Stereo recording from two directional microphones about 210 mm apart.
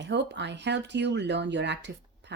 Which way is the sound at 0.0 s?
55° right (ahead or behind).